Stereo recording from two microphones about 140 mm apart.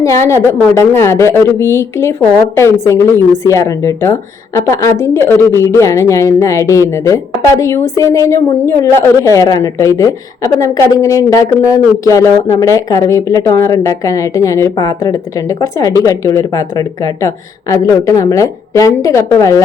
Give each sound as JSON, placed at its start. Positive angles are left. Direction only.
{"t": 0.0, "sound": "a woman's voice", "side_deg": 20}